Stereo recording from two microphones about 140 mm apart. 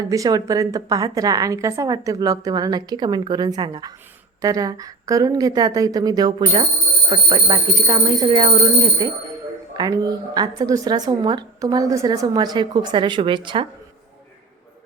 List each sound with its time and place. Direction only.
0.1 s a woman's voice: 25° right (ahead or behind)